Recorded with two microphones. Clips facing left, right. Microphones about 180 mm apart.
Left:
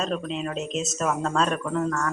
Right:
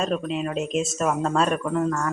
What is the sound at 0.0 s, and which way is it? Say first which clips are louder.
A woman's voice: right 3 dB; 5° right (ahead or behind).